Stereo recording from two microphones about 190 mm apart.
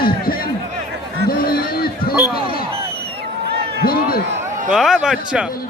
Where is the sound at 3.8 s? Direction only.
50° left (ahead or behind).